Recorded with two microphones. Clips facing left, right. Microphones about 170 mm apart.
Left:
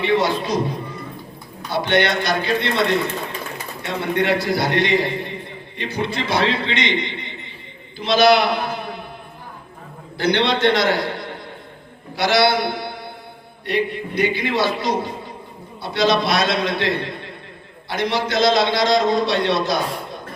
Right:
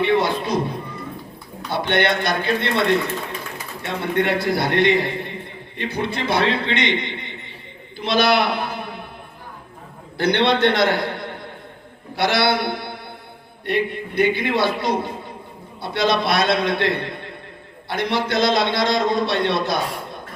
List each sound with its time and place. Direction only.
0.0 s speech: 55° right (ahead or behind)
1.7 s a man's voice: 55° right (ahead or behind)
7.9 s a sound: 55° right (ahead or behind)
10.2 s a man's voice: 55° right (ahead or behind)